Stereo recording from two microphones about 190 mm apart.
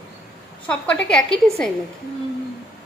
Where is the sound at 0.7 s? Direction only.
5° left (ahead or behind).